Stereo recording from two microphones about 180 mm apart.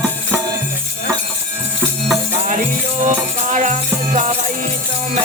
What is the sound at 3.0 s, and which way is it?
Music, 40° right (ahead or behind).